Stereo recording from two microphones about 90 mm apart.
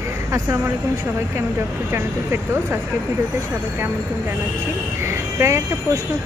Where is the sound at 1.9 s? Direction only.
25° right (ahead or behind).